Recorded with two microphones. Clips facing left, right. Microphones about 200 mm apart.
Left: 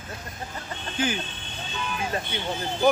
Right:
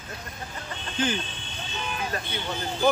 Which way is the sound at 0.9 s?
10° left (ahead or behind).